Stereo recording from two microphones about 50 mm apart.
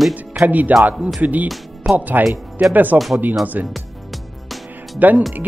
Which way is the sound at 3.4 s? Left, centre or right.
Right.